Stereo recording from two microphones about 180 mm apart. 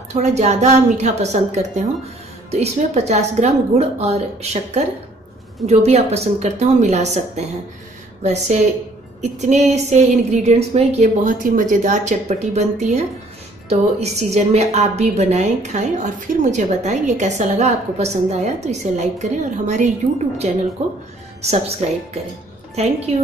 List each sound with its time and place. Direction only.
0.1 s a woman's voice: 40° right (ahead or behind)
11.0 s a woman's voice: 50° right (ahead or behind)